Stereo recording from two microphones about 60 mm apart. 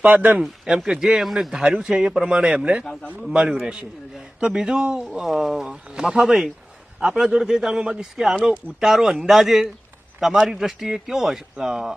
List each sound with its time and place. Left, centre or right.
0.2 s speech: right
0.8 s speech: centre
2.8 s a man's voice: centre
3.5 s a man's voice: centre